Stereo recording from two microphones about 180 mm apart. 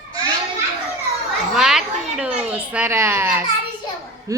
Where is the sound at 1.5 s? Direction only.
5° right (ahead or behind).